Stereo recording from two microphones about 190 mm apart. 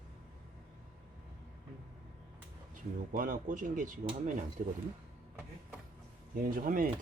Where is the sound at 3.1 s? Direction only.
45° right (ahead or behind).